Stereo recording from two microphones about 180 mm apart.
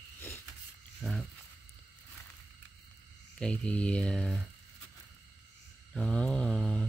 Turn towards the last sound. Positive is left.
turn(degrees=5)  # may be behind; listen again after turning